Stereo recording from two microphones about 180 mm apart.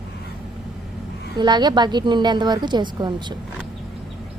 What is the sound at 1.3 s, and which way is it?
A woman's voice, 25° right (ahead or behind).